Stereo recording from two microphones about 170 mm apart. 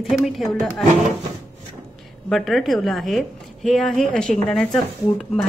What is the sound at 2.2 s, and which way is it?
Speech, centre (ahead or behind).